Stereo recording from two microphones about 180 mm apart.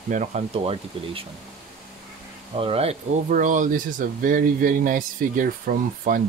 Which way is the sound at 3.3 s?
45° right (ahead or behind).